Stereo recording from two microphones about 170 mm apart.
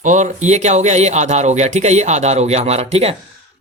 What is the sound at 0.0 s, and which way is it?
Speech, 45° right (ahead or behind).